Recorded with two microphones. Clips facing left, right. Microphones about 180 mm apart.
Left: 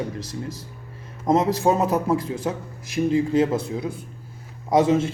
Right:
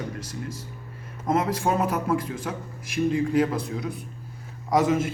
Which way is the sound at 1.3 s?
25° left (ahead or behind).